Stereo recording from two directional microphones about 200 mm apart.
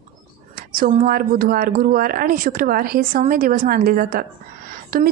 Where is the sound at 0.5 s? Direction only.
45° right (ahead or behind).